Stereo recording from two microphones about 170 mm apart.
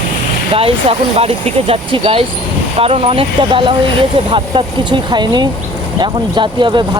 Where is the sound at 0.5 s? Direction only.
35° right (ahead or behind).